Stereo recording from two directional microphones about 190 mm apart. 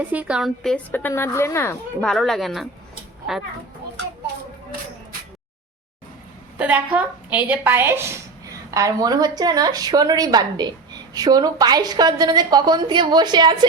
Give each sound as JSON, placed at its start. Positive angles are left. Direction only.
{"t": 0.0, "sound": "a woman's voice", "side_deg": -5}
{"t": 6.6, "sound": "a woman's voice", "side_deg": -10}